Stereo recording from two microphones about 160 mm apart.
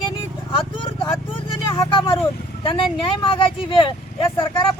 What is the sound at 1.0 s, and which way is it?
Speech, 30° left (ahead or behind).